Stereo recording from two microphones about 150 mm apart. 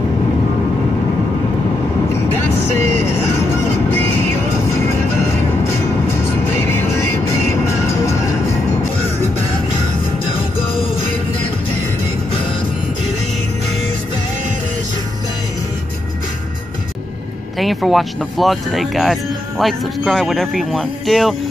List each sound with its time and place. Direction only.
7.2 s music: 20° left (ahead or behind)
17.6 s speech: centre (ahead or behind)